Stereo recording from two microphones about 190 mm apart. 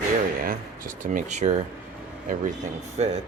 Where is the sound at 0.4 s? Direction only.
45° right (ahead or behind).